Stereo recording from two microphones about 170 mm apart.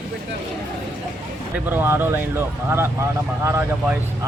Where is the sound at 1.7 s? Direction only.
10° right (ahead or behind).